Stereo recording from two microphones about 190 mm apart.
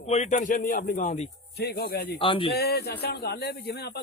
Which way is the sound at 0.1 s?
35° left (ahead or behind).